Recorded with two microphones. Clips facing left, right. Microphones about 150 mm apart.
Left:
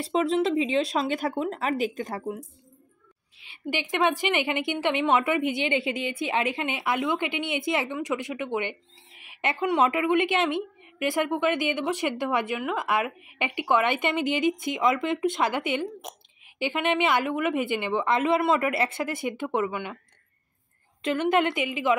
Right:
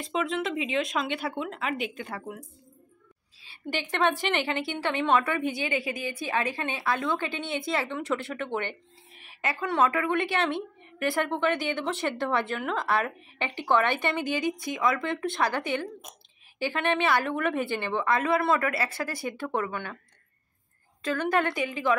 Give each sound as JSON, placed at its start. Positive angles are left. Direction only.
{"t": 0.0, "sound": "speech", "side_deg": 35}
{"t": 3.6, "sound": "a woman's voice", "side_deg": 10}
{"t": 21.0, "sound": "speech", "side_deg": 20}